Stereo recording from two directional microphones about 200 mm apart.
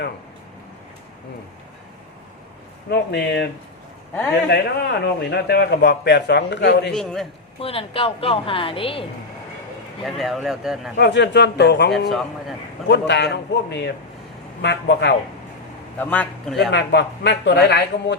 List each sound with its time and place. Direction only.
2.9 s a man's voice: 55° left (ahead or behind)
6.9 s speech: centre (ahead or behind)
7.6 s a woman's voice: 30° left (ahead or behind)
10.0 s speech: centre (ahead or behind)
10.9 s a man's voice: 60° left (ahead or behind)
11.9 s speech: centre (ahead or behind)
12.9 s a man's voice: 60° left (ahead or behind)
16.0 s a man's voice: 10° left (ahead or behind)
16.7 s a man's voice: 60° left (ahead or behind)